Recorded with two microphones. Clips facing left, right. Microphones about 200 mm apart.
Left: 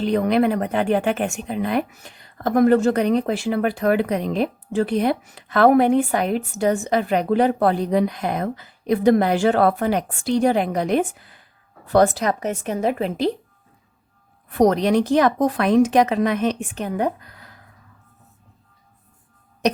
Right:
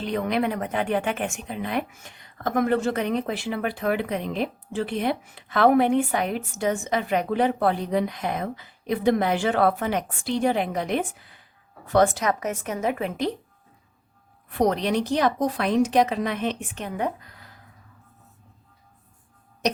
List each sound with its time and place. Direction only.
0.0 s speech: 40° left (ahead or behind)
14.6 s speech: 45° left (ahead or behind)